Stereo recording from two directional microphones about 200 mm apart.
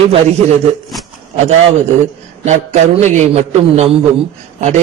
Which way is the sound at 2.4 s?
35° right (ahead or behind).